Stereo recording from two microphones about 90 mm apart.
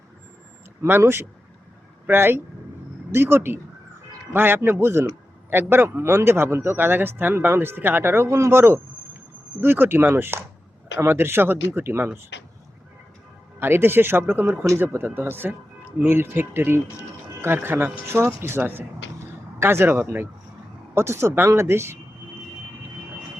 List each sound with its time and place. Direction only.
0.8 s a man's voice: 30° right (ahead or behind)
13.6 s a man's voice: 25° right (ahead or behind)